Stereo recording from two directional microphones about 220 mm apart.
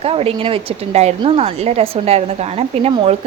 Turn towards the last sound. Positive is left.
turn(degrees=-30)  # may be behind; listen again after turning